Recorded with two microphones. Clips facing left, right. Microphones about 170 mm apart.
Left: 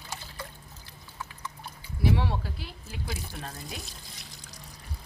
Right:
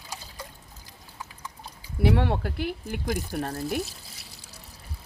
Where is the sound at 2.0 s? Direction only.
60° right (ahead or behind).